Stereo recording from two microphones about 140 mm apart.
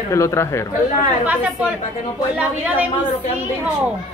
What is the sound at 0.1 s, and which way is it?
Speech, 20° left (ahead or behind).